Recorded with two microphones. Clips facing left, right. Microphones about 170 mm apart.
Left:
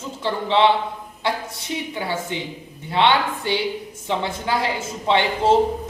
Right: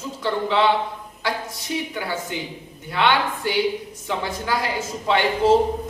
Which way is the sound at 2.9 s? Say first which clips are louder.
Left 2 dB; 25° left (ahead or behind).